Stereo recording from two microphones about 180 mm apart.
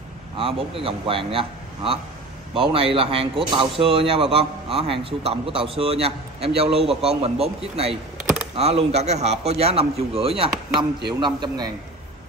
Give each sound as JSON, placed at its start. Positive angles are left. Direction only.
{"t": 0.4, "sound": "a man's voice", "side_deg": -30}